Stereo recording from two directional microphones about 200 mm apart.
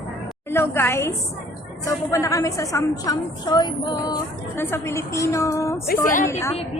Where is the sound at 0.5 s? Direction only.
10° left (ahead or behind).